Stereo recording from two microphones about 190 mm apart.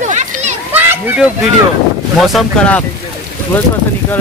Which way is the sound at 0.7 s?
10° right (ahead or behind).